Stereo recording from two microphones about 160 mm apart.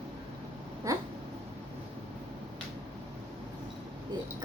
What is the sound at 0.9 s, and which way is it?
Cat, 20° right (ahead or behind).